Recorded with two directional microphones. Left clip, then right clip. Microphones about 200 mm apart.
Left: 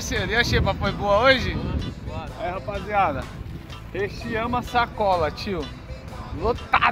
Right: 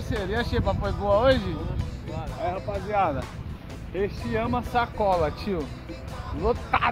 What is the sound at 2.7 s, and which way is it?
Speech, 10° left (ahead or behind).